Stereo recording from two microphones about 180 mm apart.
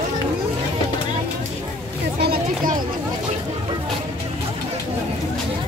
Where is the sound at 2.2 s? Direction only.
60° right (ahead or behind).